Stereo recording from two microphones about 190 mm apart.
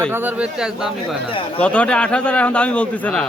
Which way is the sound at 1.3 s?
25° left (ahead or behind).